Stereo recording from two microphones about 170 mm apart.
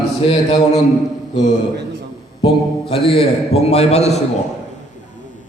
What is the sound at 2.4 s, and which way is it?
A man's voice, 35° left (ahead or behind).